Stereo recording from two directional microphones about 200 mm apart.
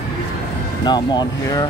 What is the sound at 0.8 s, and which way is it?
Speech, 20° left (ahead or behind).